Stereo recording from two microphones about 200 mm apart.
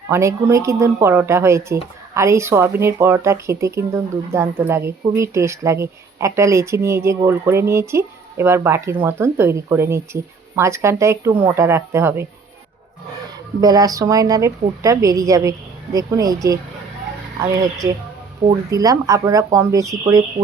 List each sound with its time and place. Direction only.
0.1 s speech: 15° right (ahead or behind)
13.6 s speech: 20° right (ahead or behind)